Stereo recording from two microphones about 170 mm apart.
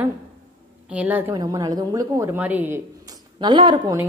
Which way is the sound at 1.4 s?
25° right (ahead or behind).